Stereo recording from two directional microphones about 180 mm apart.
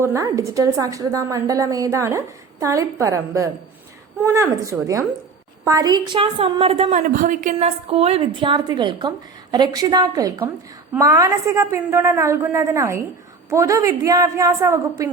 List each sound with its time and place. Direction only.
0.0 s a woman's voice: 15° right (ahead or behind); by 7.0 s 35° right (ahead or behind)
7.1 s a woman's voice: 50° right (ahead or behind); by 15.1 s 15° right (ahead or behind)